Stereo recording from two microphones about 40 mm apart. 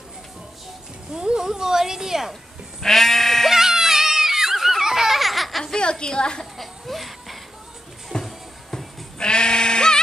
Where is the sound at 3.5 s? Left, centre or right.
Centre.